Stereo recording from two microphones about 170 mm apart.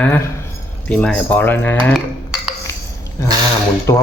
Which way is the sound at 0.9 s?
10° left (ahead or behind).